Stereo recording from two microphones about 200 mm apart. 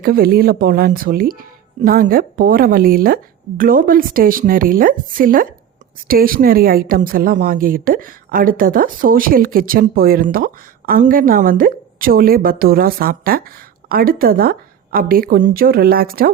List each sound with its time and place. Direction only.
0.0 s a woman's voice: 50° right (ahead or behind)